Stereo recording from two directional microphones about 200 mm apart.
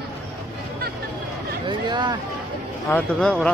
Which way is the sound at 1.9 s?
20° right (ahead or behind).